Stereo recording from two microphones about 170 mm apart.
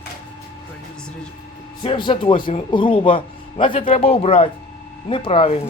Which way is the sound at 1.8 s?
30° left (ahead or behind).